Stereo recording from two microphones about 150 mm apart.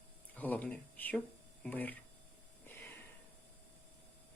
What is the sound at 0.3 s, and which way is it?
Speech, 10° left (ahead or behind).